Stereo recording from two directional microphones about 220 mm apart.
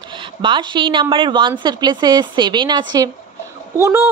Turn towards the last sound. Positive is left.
turn(degrees=-10)  # may be behind; listen again after turning